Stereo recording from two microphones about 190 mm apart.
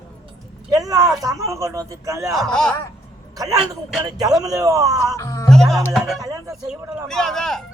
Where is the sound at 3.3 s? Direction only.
20° right (ahead or behind).